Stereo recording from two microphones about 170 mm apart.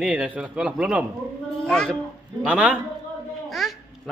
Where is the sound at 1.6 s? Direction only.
5° left (ahead or behind).